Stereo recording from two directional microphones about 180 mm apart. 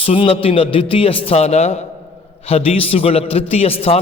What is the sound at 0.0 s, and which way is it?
A man's voice, 30° left (ahead or behind).